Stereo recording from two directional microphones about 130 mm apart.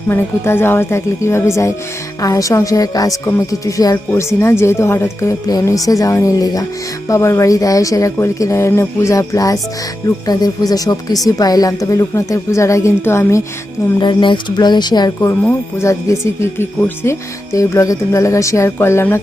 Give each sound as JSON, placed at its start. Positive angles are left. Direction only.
{"t": 0.1, "sound": "speech", "side_deg": 20}
{"t": 14.0, "sound": "a sound", "side_deg": 35}
{"t": 15.4, "sound": "speech", "side_deg": 20}